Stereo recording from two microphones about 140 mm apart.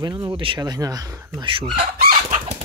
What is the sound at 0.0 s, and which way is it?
Speech, 30° right (ahead or behind).